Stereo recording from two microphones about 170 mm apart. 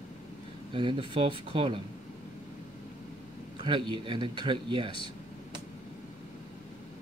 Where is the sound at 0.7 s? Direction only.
30° right (ahead or behind).